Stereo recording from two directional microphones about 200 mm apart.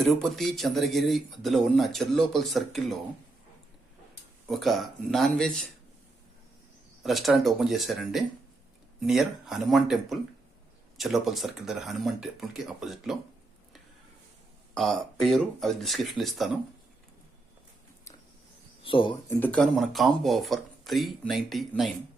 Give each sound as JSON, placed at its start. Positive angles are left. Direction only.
{"t": 0.0, "sound": "speech", "side_deg": 0}
{"t": 4.4, "sound": "speech", "side_deg": 0}
{"t": 7.0, "sound": "speech", "side_deg": 0}
{"t": 14.8, "sound": "speech", "side_deg": 0}
{"t": 18.8, "sound": "speech", "side_deg": 25}
{"t": 19.3, "sound": "speech", "side_deg": 10}